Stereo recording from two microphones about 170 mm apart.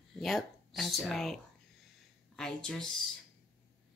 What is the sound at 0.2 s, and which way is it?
Speech, centre (ahead or behind).